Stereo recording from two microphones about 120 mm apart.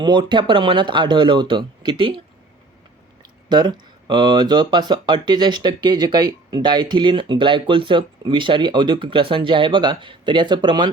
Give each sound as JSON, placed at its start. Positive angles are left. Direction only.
{"t": 0.0, "sound": "speech", "side_deg": -40}
{"t": 3.5, "sound": "speech", "side_deg": -40}